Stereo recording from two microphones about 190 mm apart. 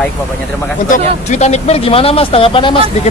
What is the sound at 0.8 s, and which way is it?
Speech, 40° left (ahead or behind).